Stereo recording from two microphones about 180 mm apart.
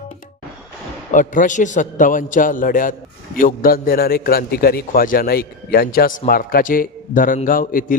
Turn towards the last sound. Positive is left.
turn(degrees=50)  # may be behind; listen again after turning